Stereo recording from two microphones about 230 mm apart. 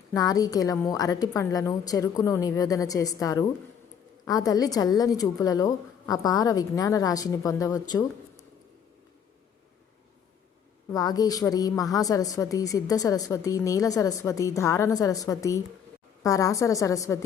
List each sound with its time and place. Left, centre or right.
0.1 s a woman's voice: centre
10.9 s a woman's voice: centre